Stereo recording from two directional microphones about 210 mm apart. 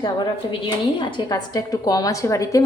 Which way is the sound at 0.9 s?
25° left (ahead or behind).